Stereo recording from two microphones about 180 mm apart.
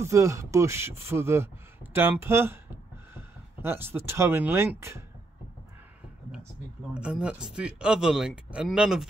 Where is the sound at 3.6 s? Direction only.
15° right (ahead or behind).